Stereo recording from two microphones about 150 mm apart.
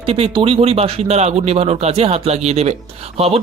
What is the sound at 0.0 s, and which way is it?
Speech, 40° right (ahead or behind).